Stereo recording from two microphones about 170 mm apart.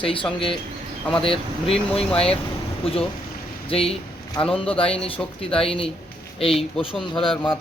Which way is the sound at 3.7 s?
35° left (ahead or behind).